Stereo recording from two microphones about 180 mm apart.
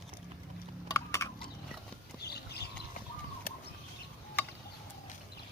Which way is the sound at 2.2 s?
65° left (ahead or behind).